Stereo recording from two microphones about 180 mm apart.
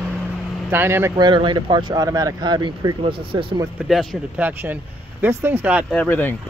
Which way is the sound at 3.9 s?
Centre (ahead or behind).